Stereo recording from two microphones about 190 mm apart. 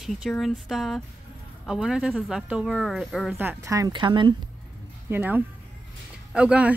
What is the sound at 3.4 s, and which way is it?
Speech, 15° right (ahead or behind).